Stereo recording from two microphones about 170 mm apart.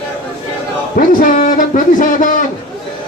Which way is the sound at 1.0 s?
55° left (ahead or behind).